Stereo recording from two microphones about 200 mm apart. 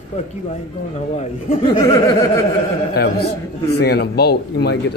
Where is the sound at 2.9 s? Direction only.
55° left (ahead or behind).